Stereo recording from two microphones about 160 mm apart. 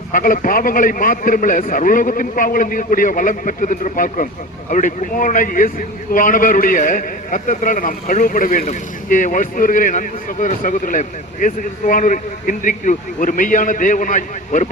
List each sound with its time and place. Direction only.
0.1 s a man's voice: 60° left (ahead or behind)